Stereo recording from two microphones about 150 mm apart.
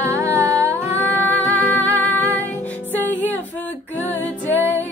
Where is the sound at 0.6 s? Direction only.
20° right (ahead or behind).